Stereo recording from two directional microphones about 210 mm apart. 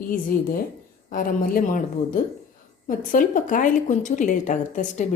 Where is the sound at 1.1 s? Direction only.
40° left (ahead or behind).